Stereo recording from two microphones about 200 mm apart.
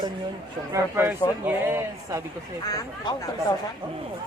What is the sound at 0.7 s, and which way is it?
A man's voice, 10° right (ahead or behind).